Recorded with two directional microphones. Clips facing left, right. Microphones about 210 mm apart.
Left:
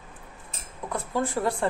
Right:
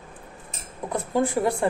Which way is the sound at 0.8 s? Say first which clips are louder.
Right 4 dB; 15° right (ahead or behind).